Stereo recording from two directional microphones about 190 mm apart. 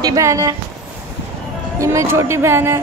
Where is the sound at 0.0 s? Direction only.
15° right (ahead or behind).